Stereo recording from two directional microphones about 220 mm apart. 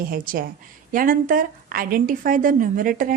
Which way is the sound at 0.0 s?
40° right (ahead or behind).